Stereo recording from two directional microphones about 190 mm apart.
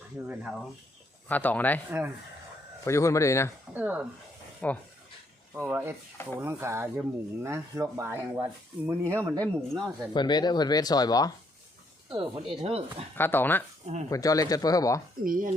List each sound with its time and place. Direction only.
0.3 s speech: 5° right (ahead or behind)
1.3 s speech: 10° left (ahead or behind)
2.8 s speech: 15° left (ahead or behind)
3.8 s speech: 5° right (ahead or behind)
4.6 s speech: 5° left (ahead or behind)
5.5 s speech: 10° right (ahead or behind)
9.4 s speech: 5° left (ahead or behind)
10.2 s speech: 20° left (ahead or behind)
12.0 s speech: 25° right (ahead or behind)
13.1 s speech: 10° left (ahead or behind)
15.2 s speech: 45° right (ahead or behind)